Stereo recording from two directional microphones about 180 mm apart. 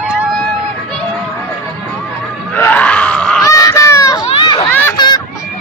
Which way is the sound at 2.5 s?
10° left (ahead or behind).